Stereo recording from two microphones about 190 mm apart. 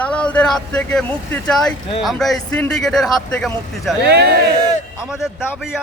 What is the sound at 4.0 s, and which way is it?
Speech, 60° right (ahead or behind).